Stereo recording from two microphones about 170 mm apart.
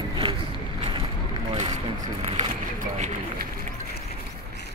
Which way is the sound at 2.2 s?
35° right (ahead or behind).